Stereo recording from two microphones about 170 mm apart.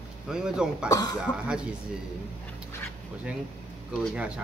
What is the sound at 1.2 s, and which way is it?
Speech, 5° right (ahead or behind).